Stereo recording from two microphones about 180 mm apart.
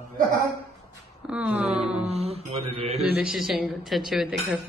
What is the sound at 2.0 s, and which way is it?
Mantra, 35° right (ahead or behind).